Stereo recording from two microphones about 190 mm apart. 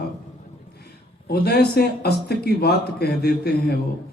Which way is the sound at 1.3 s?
55° left (ahead or behind).